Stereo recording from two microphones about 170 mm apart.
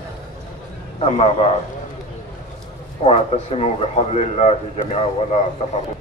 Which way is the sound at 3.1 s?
40° left (ahead or behind).